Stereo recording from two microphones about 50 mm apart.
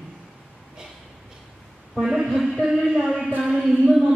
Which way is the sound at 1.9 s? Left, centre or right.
Centre.